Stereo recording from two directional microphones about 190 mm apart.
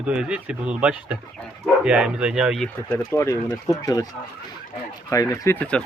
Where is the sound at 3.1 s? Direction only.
15° left (ahead or behind).